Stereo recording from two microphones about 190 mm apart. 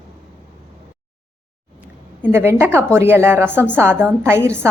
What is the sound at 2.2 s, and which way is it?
A woman's voice, 10° right (ahead or behind).